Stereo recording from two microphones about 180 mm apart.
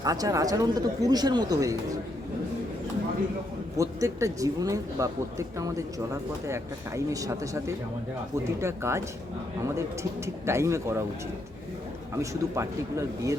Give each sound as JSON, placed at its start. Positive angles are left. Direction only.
{"t": 0.0, "sound": "speech", "side_deg": -20}
{"t": 3.8, "sound": "a man's voice", "side_deg": -20}
{"t": 12.2, "sound": "a man's voice", "side_deg": -15}